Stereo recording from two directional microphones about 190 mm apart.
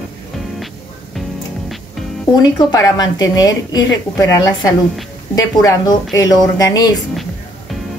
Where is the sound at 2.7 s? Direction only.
20° left (ahead or behind).